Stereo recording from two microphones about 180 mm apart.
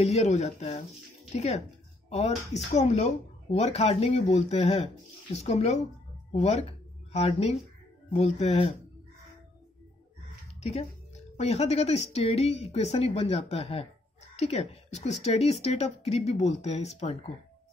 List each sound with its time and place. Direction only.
0.0 s speech: 40° left (ahead or behind)
10.6 s a woman's voice: 35° left (ahead or behind)